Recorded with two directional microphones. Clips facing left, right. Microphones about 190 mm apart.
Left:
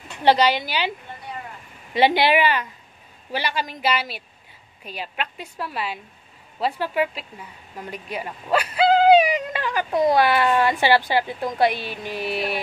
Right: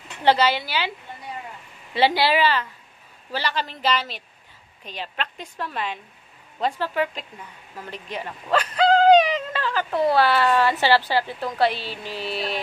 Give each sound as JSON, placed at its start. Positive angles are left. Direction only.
{"t": 0.2, "sound": "a woman's voice", "side_deg": 15}
{"t": 2.0, "sound": "a woman's voice", "side_deg": 20}